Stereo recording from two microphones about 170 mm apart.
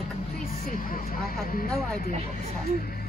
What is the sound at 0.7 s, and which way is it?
Speech, 55° left (ahead or behind).